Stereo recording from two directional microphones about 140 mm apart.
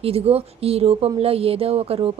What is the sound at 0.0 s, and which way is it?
Speech, 45° right (ahead or behind).